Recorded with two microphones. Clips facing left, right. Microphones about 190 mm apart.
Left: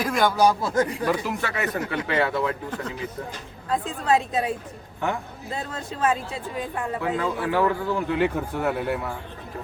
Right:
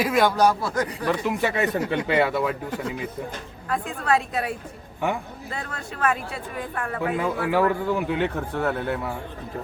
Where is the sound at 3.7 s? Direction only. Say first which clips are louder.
Left 1 dB; 25° left (ahead or behind).